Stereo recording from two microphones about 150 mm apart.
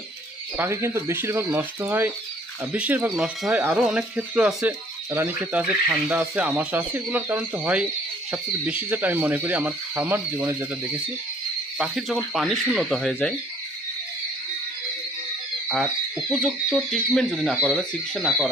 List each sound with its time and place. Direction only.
0.5 s speech: 15° right (ahead or behind)
11.8 s speech: centre (ahead or behind)
16.3 s speech: centre (ahead or behind)